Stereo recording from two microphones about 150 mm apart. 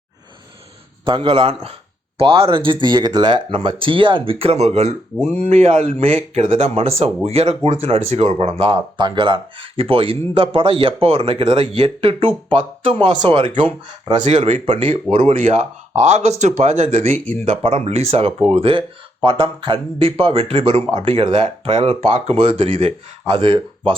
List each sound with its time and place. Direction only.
1.0 s speech: 35° right (ahead or behind)
23.2 s speech: 30° right (ahead or behind)